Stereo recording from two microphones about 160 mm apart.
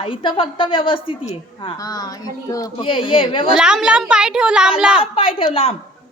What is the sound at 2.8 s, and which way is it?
Speech, 35° left (ahead or behind).